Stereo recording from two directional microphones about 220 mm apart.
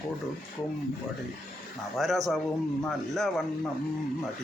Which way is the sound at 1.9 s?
Centre (ahead or behind).